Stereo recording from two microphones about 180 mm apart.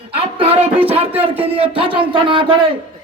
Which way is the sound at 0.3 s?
30° right (ahead or behind).